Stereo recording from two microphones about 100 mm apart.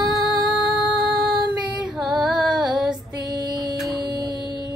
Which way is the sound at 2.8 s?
45° right (ahead or behind).